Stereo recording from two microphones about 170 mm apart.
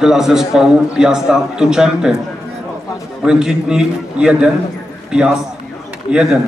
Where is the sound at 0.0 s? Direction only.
Centre (ahead or behind).